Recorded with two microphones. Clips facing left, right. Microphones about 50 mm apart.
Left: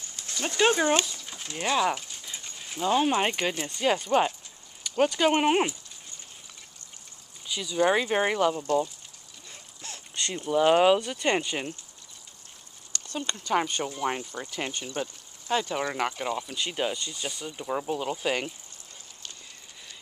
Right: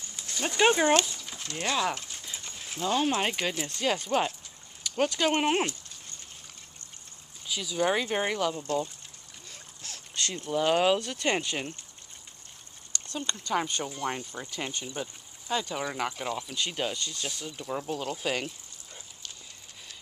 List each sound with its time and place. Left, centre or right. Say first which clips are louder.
0.1 s speech: even; centre
1.1 s speech: even; centre
7.4 s speech: left 3 dB; centre
9.8 s speech: left 1 dB; centre
13.1 s speech: left 3 dB; centre